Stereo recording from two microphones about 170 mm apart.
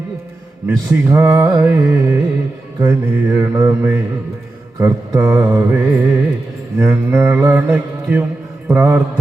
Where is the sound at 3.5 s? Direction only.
15° right (ahead or behind).